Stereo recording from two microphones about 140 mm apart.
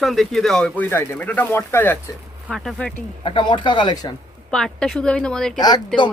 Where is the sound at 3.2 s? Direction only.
35° left (ahead or behind).